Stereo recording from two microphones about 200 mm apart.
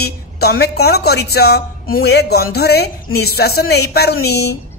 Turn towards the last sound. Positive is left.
turn(degrees=55)  # may be behind; listen again after turning